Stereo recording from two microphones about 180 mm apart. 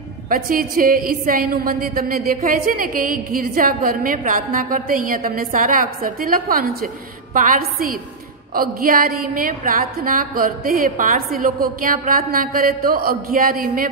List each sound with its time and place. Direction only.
0.3 s a woman's voice: 50° right (ahead or behind)